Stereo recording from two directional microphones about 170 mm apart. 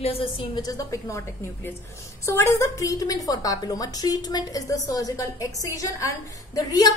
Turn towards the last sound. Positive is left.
turn(degrees=20)  # may be behind; listen again after turning